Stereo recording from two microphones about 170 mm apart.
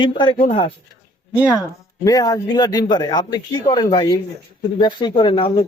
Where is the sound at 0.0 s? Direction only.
30° left (ahead or behind).